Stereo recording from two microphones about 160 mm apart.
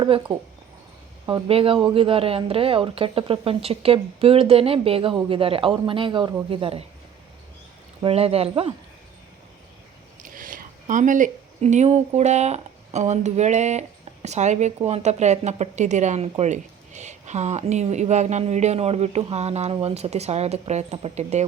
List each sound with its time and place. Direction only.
1.3 s a woman's voice: 35° right (ahead or behind)
8.0 s a woman's voice: 40° right (ahead or behind)
10.2 s a woman's voice: 60° right (ahead or behind)